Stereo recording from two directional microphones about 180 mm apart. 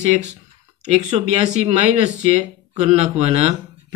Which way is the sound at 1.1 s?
35° right (ahead or behind).